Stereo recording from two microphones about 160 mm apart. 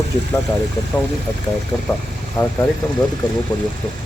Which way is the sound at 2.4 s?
20° left (ahead or behind).